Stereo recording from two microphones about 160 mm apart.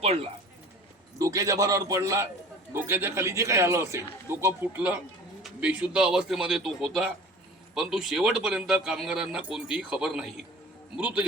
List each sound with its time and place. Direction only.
0.0 s speech: 40° right (ahead or behind)
1.2 s a man's voice: 20° right (ahead or behind)